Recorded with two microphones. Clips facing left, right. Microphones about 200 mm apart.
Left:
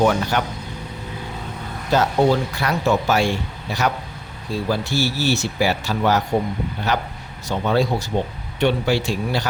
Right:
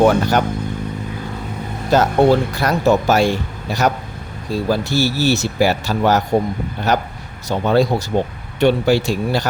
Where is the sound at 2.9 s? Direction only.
40° right (ahead or behind).